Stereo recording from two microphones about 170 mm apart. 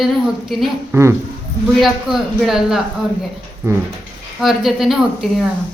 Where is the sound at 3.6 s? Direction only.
15° right (ahead or behind).